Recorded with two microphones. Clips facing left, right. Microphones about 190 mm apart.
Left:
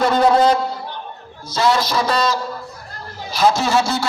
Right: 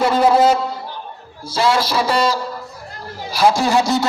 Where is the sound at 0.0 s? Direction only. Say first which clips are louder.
Right 1 dB; 5° right (ahead or behind).